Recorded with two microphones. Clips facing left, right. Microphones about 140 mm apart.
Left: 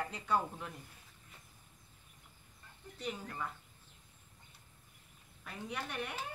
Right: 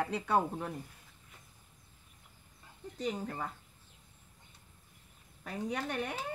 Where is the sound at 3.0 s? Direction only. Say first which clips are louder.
Right 5 dB; 35° right (ahead or behind).